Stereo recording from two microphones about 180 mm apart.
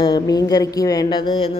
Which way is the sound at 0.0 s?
20° left (ahead or behind).